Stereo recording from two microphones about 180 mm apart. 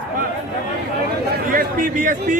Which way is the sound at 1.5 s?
50° right (ahead or behind).